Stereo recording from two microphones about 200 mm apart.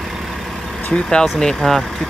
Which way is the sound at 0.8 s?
5° left (ahead or behind).